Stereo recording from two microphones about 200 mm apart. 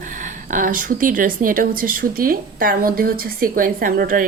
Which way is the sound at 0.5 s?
45° right (ahead or behind).